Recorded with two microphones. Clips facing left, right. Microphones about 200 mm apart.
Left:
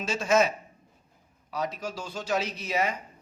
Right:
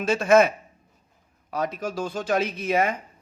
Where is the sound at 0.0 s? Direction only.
55° right (ahead or behind).